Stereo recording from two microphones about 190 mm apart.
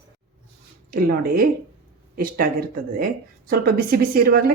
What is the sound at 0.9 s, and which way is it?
Speech, 50° right (ahead or behind).